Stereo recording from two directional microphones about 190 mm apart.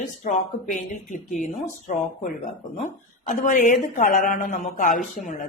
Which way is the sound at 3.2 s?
40° left (ahead or behind).